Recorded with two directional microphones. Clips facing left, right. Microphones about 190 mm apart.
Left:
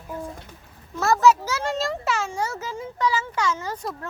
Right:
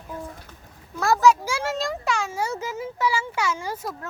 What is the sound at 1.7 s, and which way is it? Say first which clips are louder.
Speech: left 2 dB; centre (ahead or behind).